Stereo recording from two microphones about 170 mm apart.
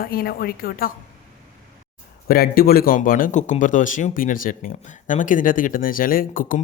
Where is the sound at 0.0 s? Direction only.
65° left (ahead or behind).